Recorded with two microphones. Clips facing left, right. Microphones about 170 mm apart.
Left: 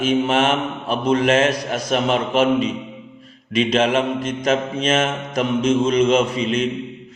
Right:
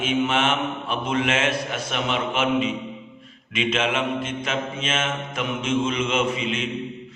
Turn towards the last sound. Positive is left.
turn(degrees=40)  # may be behind; listen again after turning